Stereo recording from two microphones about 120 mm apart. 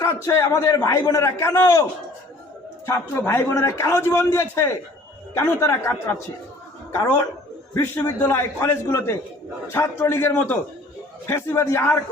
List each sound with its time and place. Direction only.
0.0 s a man's voice: 25° left (ahead or behind)